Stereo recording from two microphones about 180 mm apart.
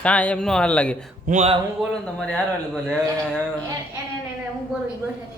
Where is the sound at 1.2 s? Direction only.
40° right (ahead or behind).